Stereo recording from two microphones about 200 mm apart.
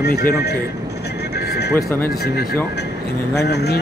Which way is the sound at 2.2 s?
50° left (ahead or behind).